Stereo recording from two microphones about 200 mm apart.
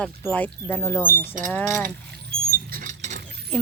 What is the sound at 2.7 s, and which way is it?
Rodents, 45° right (ahead or behind).